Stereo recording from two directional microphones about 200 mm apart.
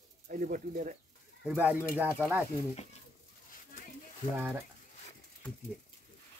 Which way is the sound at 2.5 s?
30° left (ahead or behind).